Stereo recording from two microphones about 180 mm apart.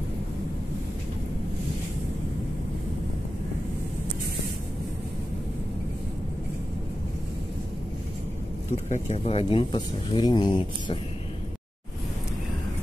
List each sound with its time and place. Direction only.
8.8 s speech: 40° left (ahead or behind); by 11.0 s 25° left (ahead or behind)